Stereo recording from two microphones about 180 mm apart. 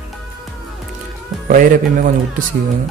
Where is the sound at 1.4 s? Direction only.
50° right (ahead or behind).